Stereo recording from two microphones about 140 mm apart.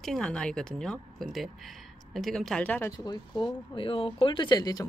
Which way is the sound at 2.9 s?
25° left (ahead or behind).